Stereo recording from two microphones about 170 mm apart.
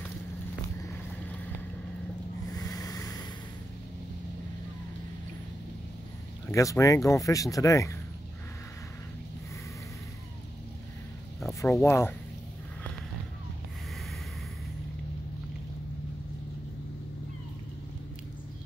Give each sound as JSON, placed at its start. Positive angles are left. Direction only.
{"t": 2.5, "sound": "a sound", "side_deg": 20}
{"t": 6.5, "sound": "speech", "side_deg": 20}
{"t": 11.6, "sound": "speech", "side_deg": 15}